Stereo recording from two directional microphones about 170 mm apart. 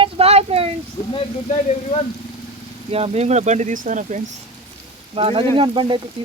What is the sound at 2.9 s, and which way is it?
Speech, 35° right (ahead or behind).